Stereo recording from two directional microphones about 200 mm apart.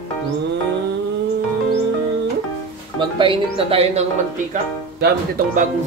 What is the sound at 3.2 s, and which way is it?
Speech, 25° right (ahead or behind).